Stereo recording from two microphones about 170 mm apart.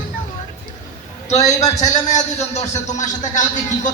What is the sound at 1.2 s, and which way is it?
A man's voice, 40° left (ahead or behind).